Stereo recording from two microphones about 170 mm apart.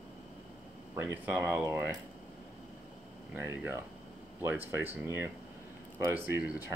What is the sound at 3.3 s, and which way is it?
Speech, 15° right (ahead or behind).